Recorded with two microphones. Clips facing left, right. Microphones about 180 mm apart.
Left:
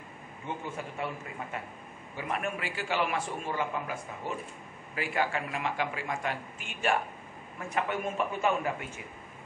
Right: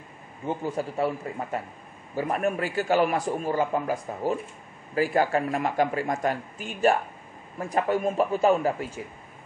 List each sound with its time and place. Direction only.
0.5 s a man's voice: 35° right (ahead or behind)